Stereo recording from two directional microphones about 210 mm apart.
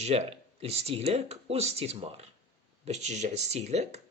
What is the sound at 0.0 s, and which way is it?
Speech, 30° right (ahead or behind).